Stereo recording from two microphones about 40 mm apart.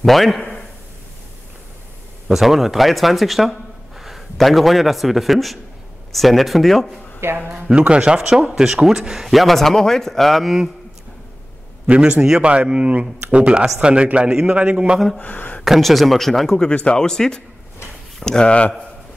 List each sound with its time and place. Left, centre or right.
0.0 s speech: centre
2.2 s a man's voice: centre
7.2 s a man's voice: right
7.7 s speech: right
9.3 s speech: centre
11.8 s a man's voice: right
15.1 s speech: left
15.6 s speech: centre
16.5 s speech: left
17.1 s speech: centre